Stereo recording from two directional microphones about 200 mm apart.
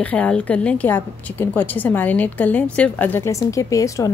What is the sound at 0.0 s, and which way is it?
A woman's voice, 5° left (ahead or behind).